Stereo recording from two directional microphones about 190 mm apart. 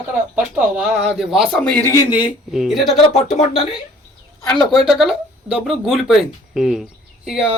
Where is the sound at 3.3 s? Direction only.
30° left (ahead or behind).